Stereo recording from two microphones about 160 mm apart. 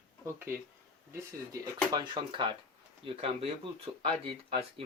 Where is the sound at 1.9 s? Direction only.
25° right (ahead or behind).